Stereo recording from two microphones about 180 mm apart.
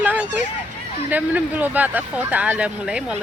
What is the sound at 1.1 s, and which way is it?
Speech, 10° right (ahead or behind).